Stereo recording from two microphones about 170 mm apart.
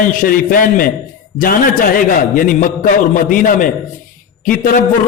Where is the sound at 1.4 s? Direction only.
55° left (ahead or behind).